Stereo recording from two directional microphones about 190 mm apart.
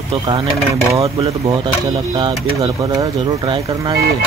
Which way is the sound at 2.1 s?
20° right (ahead or behind).